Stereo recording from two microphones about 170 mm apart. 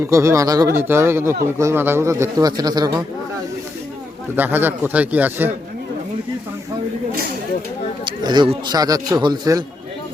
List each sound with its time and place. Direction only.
0.0 s speech: 15° right (ahead or behind)
4.4 s speech: 10° right (ahead or behind)
8.0 s a man's voice: 25° right (ahead or behind)